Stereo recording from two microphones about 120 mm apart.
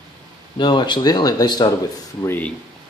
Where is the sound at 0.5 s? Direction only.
40° left (ahead or behind).